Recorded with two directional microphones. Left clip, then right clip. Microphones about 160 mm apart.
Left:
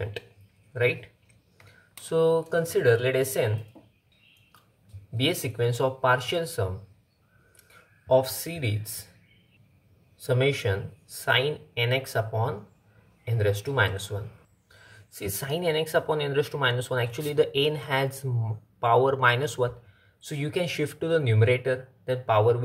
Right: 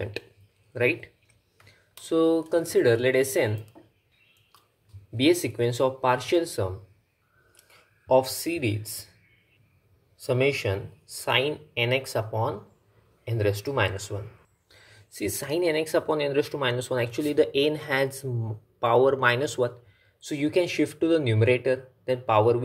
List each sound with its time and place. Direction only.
0.7 s speech: 30° right (ahead or behind)
5.1 s speech: 25° right (ahead or behind)
8.1 s speech: 25° right (ahead or behind)
10.1 s speech: 25° right (ahead or behind)